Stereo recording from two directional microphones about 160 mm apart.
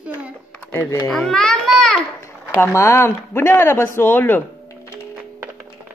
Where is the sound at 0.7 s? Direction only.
15° left (ahead or behind).